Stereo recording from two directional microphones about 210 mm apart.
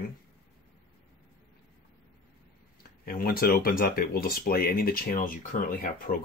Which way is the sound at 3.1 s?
45° left (ahead or behind).